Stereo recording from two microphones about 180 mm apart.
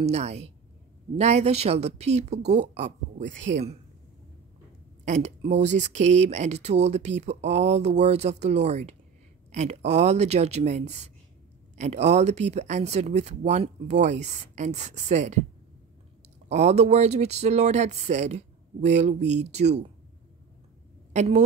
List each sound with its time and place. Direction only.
0.0 s speech: 35° right (ahead or behind)
5.0 s speech: 40° right (ahead or behind)
16.4 s speech: 40° right (ahead or behind)
21.1 s a woman's voice: 40° right (ahead or behind)